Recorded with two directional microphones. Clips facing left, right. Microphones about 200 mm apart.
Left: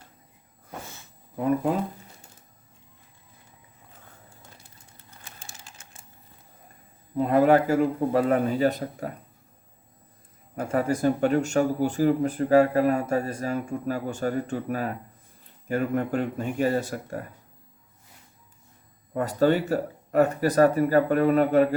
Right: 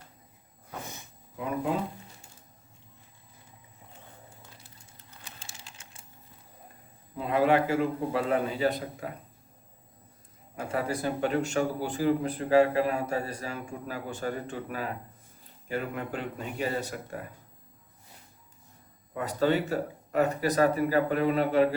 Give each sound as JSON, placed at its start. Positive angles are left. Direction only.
{"t": 1.4, "sound": "speech", "side_deg": 45}
{"t": 5.2, "sound": "a sound", "side_deg": 50}
{"t": 7.2, "sound": "speech", "side_deg": 45}
{"t": 10.7, "sound": "speech", "side_deg": 45}
{"t": 19.1, "sound": "speech", "side_deg": 50}